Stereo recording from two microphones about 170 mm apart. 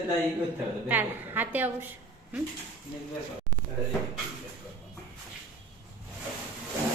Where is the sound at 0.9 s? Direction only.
10° right (ahead or behind).